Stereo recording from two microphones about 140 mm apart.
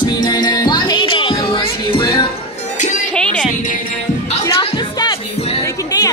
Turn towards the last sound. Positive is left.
turn(degrees=25)  # may be behind; listen again after turning